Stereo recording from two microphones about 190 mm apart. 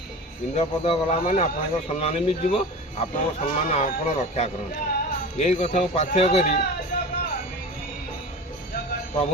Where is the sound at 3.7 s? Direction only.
35° left (ahead or behind).